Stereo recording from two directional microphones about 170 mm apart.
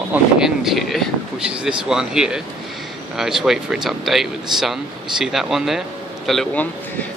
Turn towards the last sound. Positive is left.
turn(degrees=5)  # may be behind; listen again after turning